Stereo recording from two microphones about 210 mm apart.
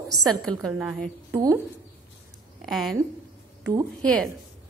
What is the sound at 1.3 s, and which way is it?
Speech, 15° right (ahead or behind).